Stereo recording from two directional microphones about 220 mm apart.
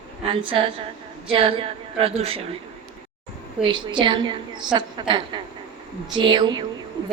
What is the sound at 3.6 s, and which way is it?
A woman's voice, 20° right (ahead or behind).